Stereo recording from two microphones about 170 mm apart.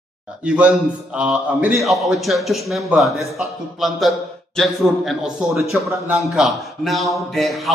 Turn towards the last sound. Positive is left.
turn(degrees=0)  # may be behind; listen again after turning